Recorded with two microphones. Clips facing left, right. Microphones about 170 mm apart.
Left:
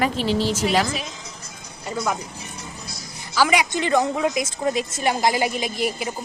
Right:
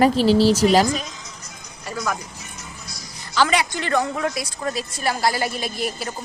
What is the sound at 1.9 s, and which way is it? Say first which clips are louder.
Music: left 2 dB; 20° left (ahead or behind).